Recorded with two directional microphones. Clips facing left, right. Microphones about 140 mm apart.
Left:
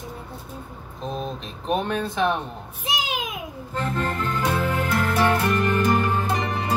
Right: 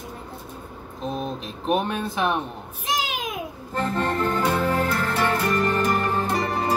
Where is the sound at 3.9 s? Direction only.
35° right (ahead or behind).